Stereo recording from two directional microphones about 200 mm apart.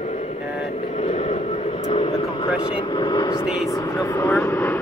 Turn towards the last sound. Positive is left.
turn(degrees=10)  # may be behind; listen again after turning